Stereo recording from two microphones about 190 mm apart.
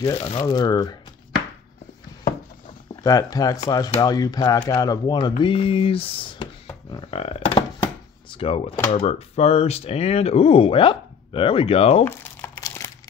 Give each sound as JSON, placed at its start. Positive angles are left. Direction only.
{"t": 0.0, "sound": "speech", "side_deg": 25}
{"t": 3.0, "sound": "speech", "side_deg": 20}
{"t": 6.9, "sound": "burping", "side_deg": 30}
{"t": 8.3, "sound": "speech", "side_deg": 30}
{"t": 12.0, "sound": "crumpling", "side_deg": 10}